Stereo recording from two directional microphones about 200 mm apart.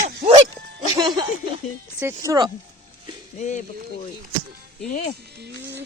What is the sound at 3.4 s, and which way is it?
Speech, 35° left (ahead or behind).